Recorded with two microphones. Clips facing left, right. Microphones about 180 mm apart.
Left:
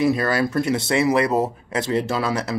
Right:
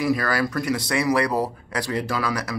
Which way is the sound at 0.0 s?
25° left (ahead or behind).